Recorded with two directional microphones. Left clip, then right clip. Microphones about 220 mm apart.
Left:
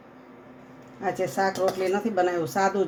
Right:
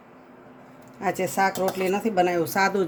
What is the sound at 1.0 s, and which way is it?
Speech, 35° right (ahead or behind).